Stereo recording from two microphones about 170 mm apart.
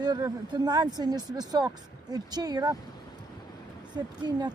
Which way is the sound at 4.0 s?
25° right (ahead or behind).